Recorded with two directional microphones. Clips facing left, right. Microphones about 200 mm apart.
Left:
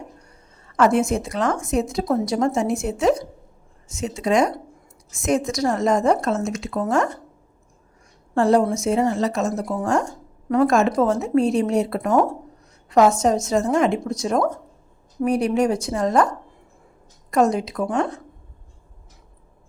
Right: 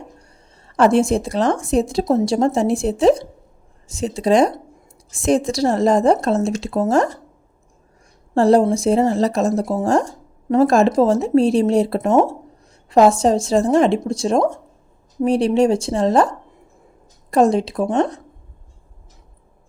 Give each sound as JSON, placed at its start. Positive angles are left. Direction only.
{"t": 0.7, "sound": "a woman's voice", "side_deg": -30}
{"t": 8.4, "sound": "a woman's voice", "side_deg": -35}
{"t": 17.3, "sound": "a woman's voice", "side_deg": -30}